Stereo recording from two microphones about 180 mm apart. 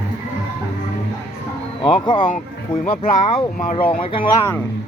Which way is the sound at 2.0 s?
25° left (ahead or behind).